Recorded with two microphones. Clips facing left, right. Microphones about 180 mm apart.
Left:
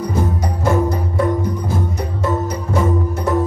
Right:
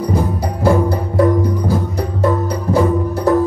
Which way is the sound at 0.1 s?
30° right (ahead or behind).